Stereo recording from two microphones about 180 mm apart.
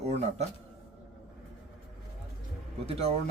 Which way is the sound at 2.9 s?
35° right (ahead or behind).